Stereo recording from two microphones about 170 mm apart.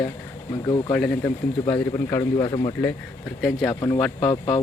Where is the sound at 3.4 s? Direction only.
Centre (ahead or behind).